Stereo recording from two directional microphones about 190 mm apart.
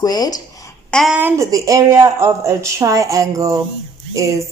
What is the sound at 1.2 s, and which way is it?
Speech, 15° right (ahead or behind).